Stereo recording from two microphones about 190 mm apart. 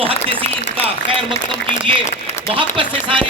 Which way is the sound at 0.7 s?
25° right (ahead or behind).